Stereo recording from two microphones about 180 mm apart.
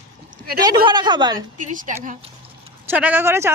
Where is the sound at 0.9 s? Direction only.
25° right (ahead or behind).